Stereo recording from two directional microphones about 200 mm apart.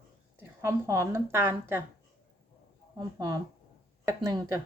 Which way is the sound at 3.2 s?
20° right (ahead or behind).